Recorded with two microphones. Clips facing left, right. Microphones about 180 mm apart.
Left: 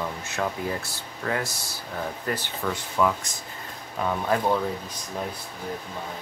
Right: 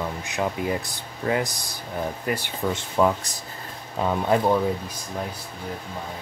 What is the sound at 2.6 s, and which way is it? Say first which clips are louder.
Speech: right 3 dB; 25° right (ahead or behind).